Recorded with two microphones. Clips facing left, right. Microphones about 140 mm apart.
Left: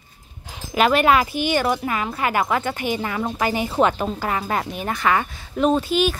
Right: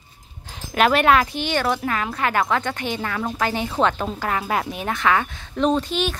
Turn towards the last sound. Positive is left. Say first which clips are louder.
# left 2 dB
turn(degrees=5)  # may be behind; listen again after turning